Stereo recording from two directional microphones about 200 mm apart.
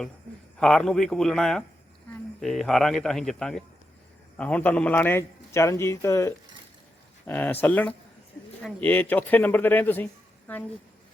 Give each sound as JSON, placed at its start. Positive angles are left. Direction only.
{"t": 0.6, "sound": "a man's voice", "side_deg": 5}